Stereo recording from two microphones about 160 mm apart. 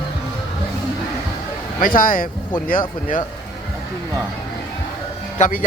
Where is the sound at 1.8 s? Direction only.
60° left (ahead or behind).